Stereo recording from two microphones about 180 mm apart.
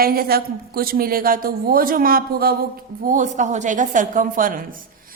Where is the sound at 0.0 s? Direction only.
55° right (ahead or behind).